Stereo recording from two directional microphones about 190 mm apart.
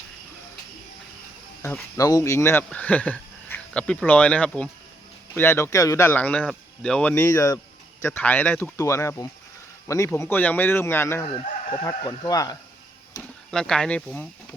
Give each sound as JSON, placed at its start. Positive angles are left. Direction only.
{"t": 1.6, "sound": "speech", "side_deg": 15}
{"t": 13.2, "sound": "a sound", "side_deg": 15}
{"t": 13.5, "sound": "speech", "side_deg": 5}